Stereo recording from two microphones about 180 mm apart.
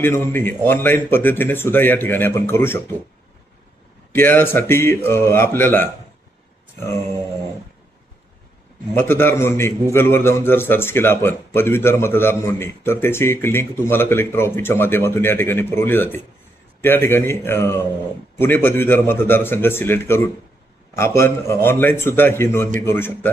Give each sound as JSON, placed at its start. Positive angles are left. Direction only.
{"t": 0.0, "sound": "a man's voice", "side_deg": 10}
{"t": 4.1, "sound": "a man's voice", "side_deg": 10}
{"t": 9.0, "sound": "a man's voice", "side_deg": 10}